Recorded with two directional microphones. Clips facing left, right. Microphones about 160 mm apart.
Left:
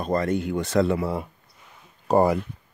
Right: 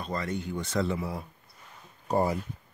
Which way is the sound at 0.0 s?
50° left (ahead or behind).